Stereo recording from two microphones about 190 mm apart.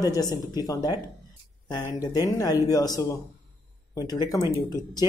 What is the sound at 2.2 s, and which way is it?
Speech, 20° left (ahead or behind).